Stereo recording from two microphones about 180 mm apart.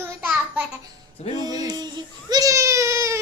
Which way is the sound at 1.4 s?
20° right (ahead or behind).